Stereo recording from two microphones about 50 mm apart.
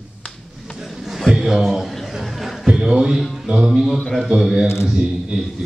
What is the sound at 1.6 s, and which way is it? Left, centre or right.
Speech, centre.